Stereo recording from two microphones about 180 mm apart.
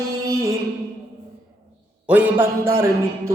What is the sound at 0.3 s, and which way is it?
Music, 15° right (ahead or behind).